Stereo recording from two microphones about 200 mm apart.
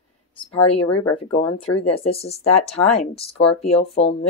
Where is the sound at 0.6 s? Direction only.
30° left (ahead or behind).